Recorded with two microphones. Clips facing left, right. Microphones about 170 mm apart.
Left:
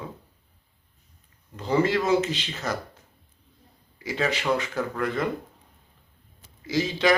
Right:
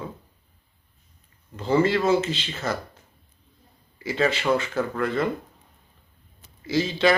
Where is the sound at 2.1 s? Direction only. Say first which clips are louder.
Right 1 dB; 15° left (ahead or behind).